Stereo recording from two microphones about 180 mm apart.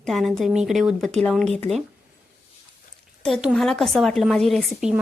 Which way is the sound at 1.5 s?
35° right (ahead or behind).